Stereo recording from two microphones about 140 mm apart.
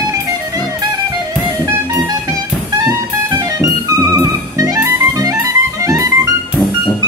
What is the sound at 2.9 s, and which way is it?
Music, 25° right (ahead or behind).